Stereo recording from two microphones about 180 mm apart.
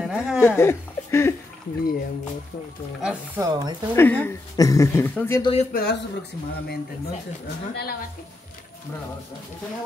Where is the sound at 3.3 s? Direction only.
20° right (ahead or behind).